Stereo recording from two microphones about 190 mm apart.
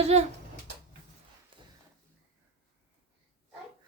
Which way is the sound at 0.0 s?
35° right (ahead or behind).